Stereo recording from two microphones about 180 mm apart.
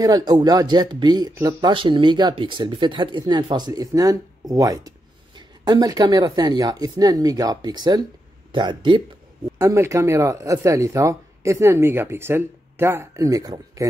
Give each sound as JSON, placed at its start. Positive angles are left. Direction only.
{"t": 0.0, "sound": "speech", "side_deg": -20}
{"t": 9.6, "sound": "speech", "side_deg": -15}